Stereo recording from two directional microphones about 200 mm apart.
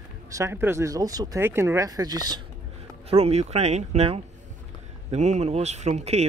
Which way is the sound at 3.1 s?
30° right (ahead or behind).